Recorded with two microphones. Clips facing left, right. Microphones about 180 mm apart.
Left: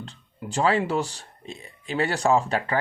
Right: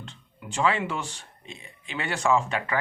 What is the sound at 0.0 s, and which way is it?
Speech, 35° left (ahead or behind).